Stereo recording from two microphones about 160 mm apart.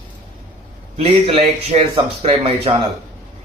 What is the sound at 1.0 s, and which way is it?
Speech, 35° right (ahead or behind).